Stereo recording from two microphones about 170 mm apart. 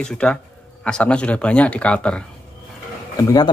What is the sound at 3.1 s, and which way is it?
Speech, 20° left (ahead or behind).